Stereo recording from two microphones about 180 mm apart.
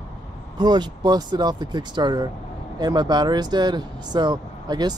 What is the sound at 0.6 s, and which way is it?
Speech, 25° right (ahead or behind).